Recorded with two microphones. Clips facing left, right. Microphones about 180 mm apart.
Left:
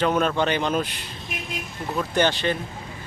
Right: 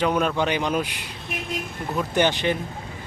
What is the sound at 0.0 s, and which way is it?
A man's voice, 10° right (ahead or behind).